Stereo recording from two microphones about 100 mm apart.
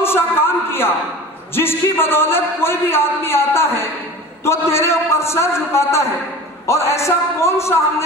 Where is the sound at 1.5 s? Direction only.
25° left (ahead or behind).